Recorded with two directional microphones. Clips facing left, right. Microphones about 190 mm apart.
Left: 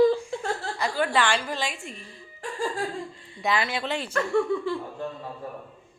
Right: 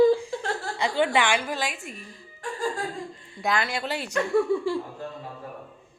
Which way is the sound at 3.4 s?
Centre (ahead or behind).